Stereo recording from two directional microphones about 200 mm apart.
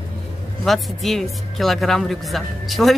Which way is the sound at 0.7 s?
Centre (ahead or behind).